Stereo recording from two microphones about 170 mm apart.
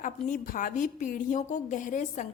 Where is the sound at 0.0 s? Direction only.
50° left (ahead or behind).